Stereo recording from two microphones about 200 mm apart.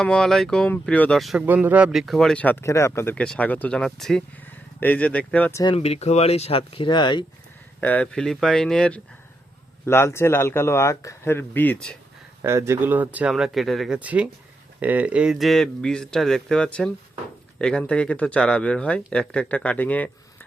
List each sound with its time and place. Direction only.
0.0 s speech: 5° left (ahead or behind)
5.6 s speech: 30° left (ahead or behind)
7.8 s speech: 10° left (ahead or behind)
12.4 s speech: 15° right (ahead or behind); by 20.1 s 5° left (ahead or behind)